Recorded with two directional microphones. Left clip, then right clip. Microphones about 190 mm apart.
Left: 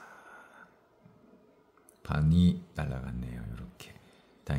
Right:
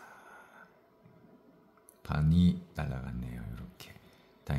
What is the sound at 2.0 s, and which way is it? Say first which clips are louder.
Speech: left 1 dB; 10° left (ahead or behind).